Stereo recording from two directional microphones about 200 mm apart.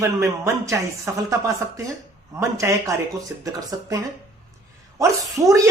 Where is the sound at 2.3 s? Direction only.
15° right (ahead or behind).